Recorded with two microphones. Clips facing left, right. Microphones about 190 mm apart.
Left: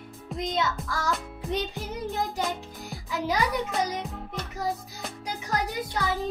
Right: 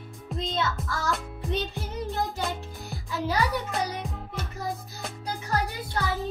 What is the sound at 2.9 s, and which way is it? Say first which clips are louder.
Music: left 1 dB; 15° left (ahead or behind).